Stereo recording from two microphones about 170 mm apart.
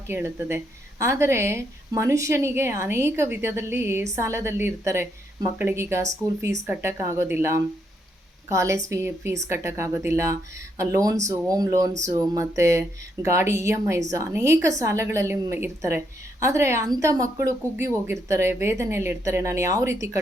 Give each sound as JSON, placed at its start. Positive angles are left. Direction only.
{"t": 0.1, "sound": "a woman's voice", "side_deg": -15}